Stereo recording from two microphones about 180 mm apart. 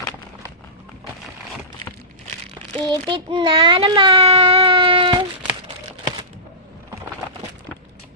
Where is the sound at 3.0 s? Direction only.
25° right (ahead or behind).